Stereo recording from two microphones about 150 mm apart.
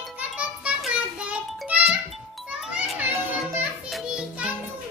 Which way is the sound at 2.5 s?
5° right (ahead or behind).